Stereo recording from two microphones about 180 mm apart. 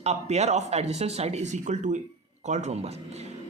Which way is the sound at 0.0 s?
40° right (ahead or behind).